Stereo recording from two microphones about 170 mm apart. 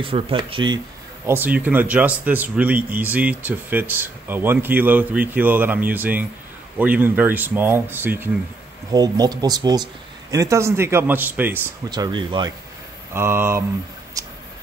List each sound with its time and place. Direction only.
0.0 s speech: 30° right (ahead or behind)
1.2 s a man's voice: 10° right (ahead or behind)
8.9 s a man's voice: 25° right (ahead or behind)
11.9 s speech: 25° right (ahead or behind)
13.1 s a man's voice: 15° right (ahead or behind)
14.2 s a sound: 20° right (ahead or behind)